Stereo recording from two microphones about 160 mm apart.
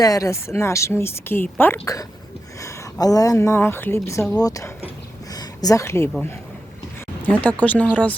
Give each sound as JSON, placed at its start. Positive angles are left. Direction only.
{"t": 0.0, "sound": "a woman's voice", "side_deg": 20}
{"t": 7.3, "sound": "a woman's voice", "side_deg": 10}